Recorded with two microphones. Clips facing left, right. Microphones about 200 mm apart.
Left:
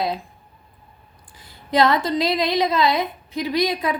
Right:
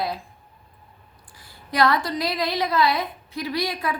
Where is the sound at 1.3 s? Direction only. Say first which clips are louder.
Left 6 dB; 20° left (ahead or behind).